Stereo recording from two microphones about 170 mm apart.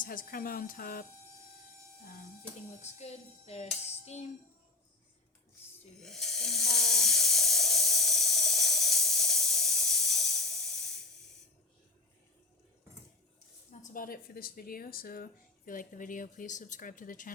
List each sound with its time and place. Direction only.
0.0 s speech: 55° left (ahead or behind)
2.8 s music: 40° left (ahead or behind)
6.0 s speech: centre (ahead or behind)
6.7 s a sound: 5° left (ahead or behind)
13.7 s speech: 50° left (ahead or behind)